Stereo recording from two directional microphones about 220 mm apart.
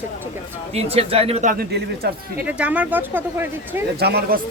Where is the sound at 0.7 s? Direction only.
30° right (ahead or behind); by 2.1 s 45° right (ahead or behind).